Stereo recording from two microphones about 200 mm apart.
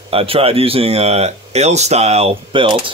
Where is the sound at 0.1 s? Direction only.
30° right (ahead or behind).